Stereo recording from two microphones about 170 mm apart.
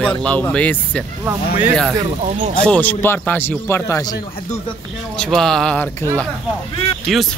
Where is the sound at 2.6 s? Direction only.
10° left (ahead or behind).